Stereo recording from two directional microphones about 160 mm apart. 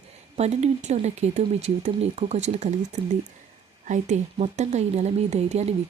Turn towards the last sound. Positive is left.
turn(degrees=-40)  # may be behind; listen again after turning